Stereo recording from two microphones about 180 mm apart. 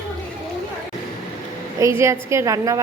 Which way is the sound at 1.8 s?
15° right (ahead or behind).